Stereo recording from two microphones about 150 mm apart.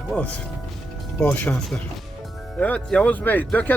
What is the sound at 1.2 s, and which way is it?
Speech, 10° left (ahead or behind).